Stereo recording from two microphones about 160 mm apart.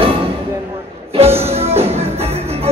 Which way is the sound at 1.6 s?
40° right (ahead or behind).